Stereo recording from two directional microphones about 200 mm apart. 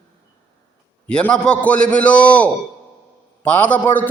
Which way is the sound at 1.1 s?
5° left (ahead or behind).